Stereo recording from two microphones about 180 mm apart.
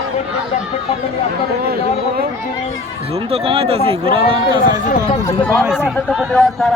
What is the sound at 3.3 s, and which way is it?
A man's voice, 35° right (ahead or behind).